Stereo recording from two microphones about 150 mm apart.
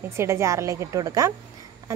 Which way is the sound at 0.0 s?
20° right (ahead or behind).